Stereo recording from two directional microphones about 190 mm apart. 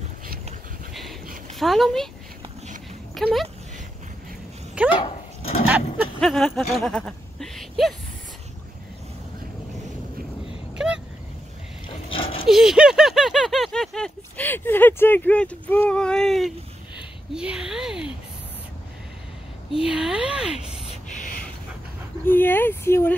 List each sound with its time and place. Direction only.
1.5 s speech: centre (ahead or behind)
3.2 s speech: centre (ahead or behind)
5.0 s dog: 30° left (ahead or behind)
6.2 s speech: centre (ahead or behind)
10.8 s vehicle: 5° right (ahead or behind)
12.1 s dog: 30° left (ahead or behind)
12.4 s a sound: centre (ahead or behind)
17.3 s speech: 5° right (ahead or behind)
19.9 s speech: 5° right (ahead or behind)
22.2 s speech: 10° left (ahead or behind)